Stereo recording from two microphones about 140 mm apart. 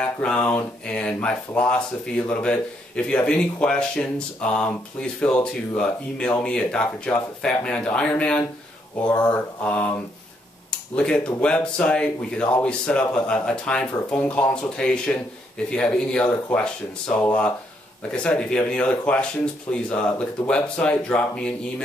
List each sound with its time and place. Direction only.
0.0 s speech: 10° left (ahead or behind)
9.0 s mantra: 30° left (ahead or behind)
9.3 s speech: 10° left (ahead or behind)